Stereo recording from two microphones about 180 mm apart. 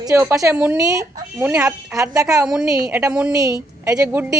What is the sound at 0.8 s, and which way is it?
Speech, 20° right (ahead or behind).